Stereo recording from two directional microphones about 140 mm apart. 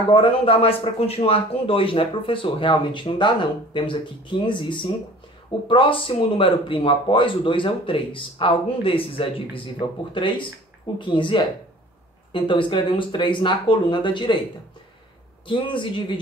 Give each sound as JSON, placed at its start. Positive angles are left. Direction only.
{"t": 0.1, "sound": "a man's voice", "side_deg": 40}
{"t": 15.4, "sound": "a man's voice", "side_deg": 35}